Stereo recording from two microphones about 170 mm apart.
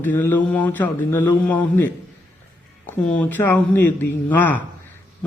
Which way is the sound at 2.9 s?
10° left (ahead or behind).